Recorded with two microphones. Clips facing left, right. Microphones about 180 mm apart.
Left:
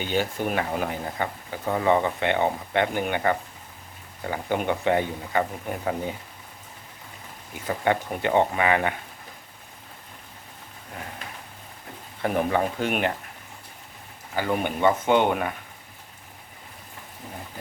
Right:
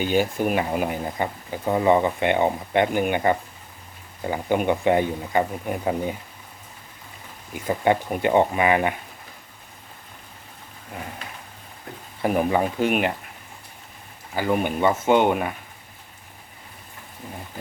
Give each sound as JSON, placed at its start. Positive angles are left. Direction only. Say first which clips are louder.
{"t": 0.0, "sound": "speech", "louder": "right 4 dB", "side_deg": -10}
{"t": 7.7, "sound": "speech", "louder": "right 3 dB", "side_deg": -15}
{"t": 12.2, "sound": "speech", "louder": "right 2 dB", "side_deg": -10}
{"t": 14.3, "sound": "speech", "louder": "right 3 dB", "side_deg": -10}